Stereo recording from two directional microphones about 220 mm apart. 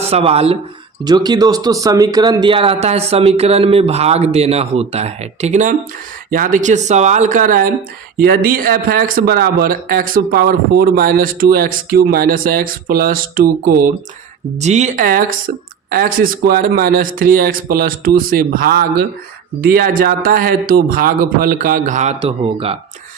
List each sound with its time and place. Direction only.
0.1 s speech: 25° right (ahead or behind)
14.6 s speech: 30° right (ahead or behind)